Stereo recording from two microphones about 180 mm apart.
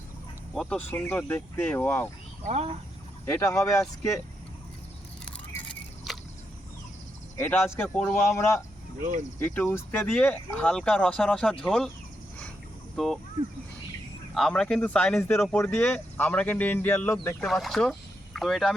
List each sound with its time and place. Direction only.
0.5 s speech: centre (ahead or behind)
2.4 s speech: 40° right (ahead or behind)
3.2 s speech: 15° left (ahead or behind)
6.1 s a sound: centre (ahead or behind)
7.3 s speech: 15° left (ahead or behind)
13.0 s speech: centre (ahead or behind)
14.3 s speech: centre (ahead or behind)